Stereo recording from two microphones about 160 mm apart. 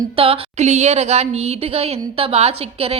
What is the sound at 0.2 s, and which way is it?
A woman's voice, 40° right (ahead or behind).